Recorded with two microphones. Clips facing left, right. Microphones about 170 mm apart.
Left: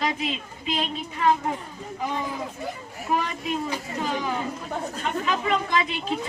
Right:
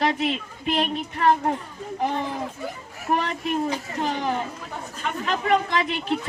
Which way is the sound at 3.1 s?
55° right (ahead or behind).